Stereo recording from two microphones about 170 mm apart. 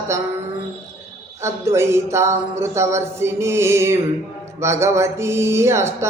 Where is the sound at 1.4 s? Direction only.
15° right (ahead or behind).